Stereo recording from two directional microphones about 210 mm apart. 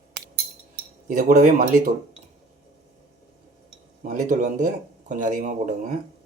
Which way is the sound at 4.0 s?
35° right (ahead or behind).